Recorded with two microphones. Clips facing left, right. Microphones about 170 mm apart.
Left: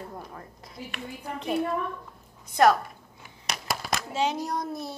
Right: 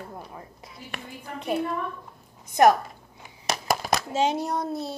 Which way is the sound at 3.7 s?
40° right (ahead or behind).